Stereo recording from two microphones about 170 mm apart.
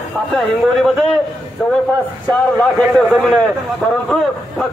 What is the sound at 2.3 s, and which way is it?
A man's voice, 5° left (ahead or behind).